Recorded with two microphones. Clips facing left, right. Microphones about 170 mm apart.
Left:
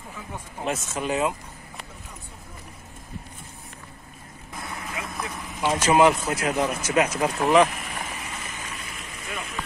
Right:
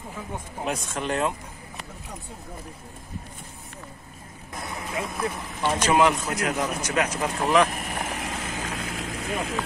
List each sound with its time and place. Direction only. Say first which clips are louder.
0.7 s speech: left 1 dB; 5° left (ahead or behind)
5.1 s a man's voice: right 4 dB; 5° left (ahead or behind)
7.7 s vehicle: right 3 dB; 50° right (ahead or behind)
8.1 s vehicle: right 5 dB; 85° right